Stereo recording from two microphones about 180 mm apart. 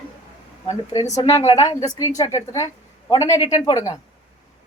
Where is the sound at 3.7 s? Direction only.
20° left (ahead or behind).